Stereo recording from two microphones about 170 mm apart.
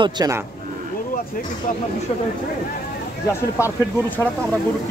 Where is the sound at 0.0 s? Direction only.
20° right (ahead or behind).